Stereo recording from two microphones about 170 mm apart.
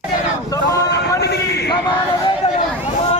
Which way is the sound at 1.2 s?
75° left (ahead or behind).